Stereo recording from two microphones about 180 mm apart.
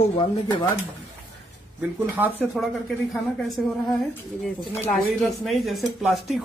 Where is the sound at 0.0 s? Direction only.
30° left (ahead or behind).